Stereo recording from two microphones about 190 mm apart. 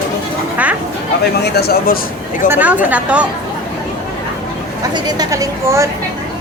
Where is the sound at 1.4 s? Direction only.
60° left (ahead or behind).